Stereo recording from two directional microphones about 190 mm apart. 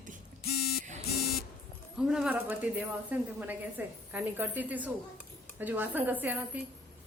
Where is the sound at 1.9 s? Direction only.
5° right (ahead or behind).